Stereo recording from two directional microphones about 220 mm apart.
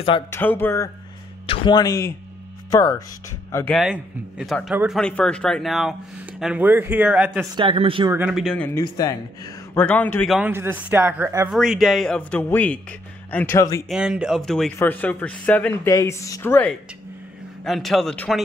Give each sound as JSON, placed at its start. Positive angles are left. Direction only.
{"t": 0.3, "sound": "speech", "side_deg": 10}
{"t": 1.5, "sound": "speech", "side_deg": 20}
{"t": 3.8, "sound": "a man's voice", "side_deg": 0}
{"t": 7.5, "sound": "speech", "side_deg": -25}
{"t": 8.1, "sound": "speech", "side_deg": -5}
{"t": 8.7, "sound": "a man's voice", "side_deg": 15}
{"t": 11.5, "sound": "speech", "side_deg": 0}
{"t": 13.8, "sound": "speech", "side_deg": -5}